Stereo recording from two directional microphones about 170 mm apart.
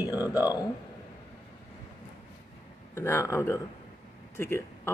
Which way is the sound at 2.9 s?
15° left (ahead or behind).